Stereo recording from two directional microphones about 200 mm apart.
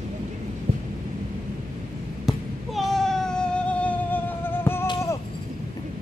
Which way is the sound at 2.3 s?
Centre (ahead or behind).